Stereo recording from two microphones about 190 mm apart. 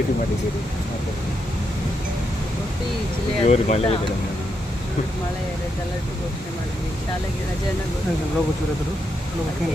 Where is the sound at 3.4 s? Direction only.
35° left (ahead or behind).